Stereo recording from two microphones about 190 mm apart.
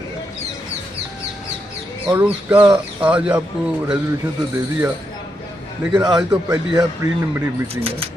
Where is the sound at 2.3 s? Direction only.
10° right (ahead or behind).